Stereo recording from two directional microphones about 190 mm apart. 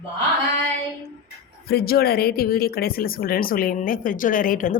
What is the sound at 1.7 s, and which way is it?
Speech, 55° left (ahead or behind).